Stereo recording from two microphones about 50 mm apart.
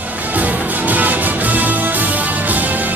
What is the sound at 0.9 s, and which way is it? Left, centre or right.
Music, right.